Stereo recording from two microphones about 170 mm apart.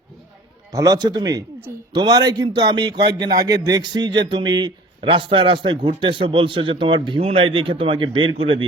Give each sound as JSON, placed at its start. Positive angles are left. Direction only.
{"t": 0.7, "sound": "speech", "side_deg": -20}